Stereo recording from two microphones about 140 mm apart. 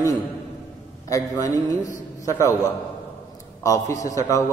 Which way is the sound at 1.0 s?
25° left (ahead or behind).